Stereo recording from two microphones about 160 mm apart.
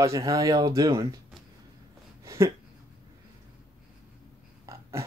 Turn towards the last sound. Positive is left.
turn(degrees=-20)  # may be behind; listen again after turning